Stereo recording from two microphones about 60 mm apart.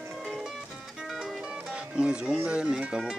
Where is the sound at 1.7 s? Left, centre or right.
Centre.